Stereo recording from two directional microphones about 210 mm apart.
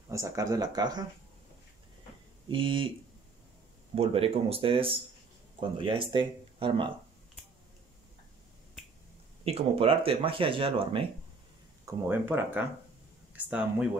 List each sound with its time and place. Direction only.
0.1 s speech: 15° right (ahead or behind)
2.4 s speech: 25° right (ahead or behind)
3.9 s speech: 30° right (ahead or behind)
9.4 s speech: 30° right (ahead or behind)
11.8 s speech: 10° right (ahead or behind)